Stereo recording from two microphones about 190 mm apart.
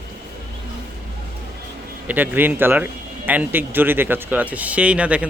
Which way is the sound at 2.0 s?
10° right (ahead or behind).